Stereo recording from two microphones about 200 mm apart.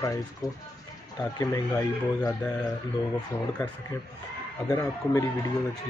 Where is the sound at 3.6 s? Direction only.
20° left (ahead or behind).